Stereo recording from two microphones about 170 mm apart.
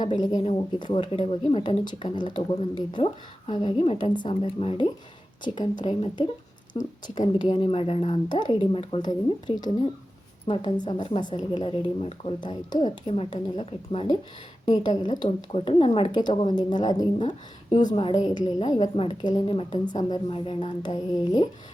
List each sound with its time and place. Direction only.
0.0 s speech: 25° left (ahead or behind)